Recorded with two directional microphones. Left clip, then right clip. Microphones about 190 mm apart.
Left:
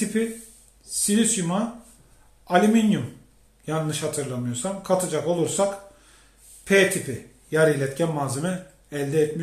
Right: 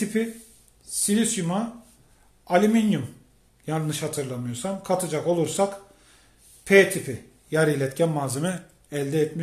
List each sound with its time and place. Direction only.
0.0 s speech: 40° right (ahead or behind)
7.1 s speech: 45° right (ahead or behind)